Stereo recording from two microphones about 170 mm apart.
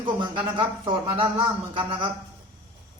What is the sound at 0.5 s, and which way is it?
Speech, 30° right (ahead or behind).